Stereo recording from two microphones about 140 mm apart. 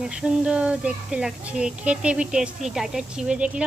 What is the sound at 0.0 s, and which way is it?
Speech, 5° right (ahead or behind).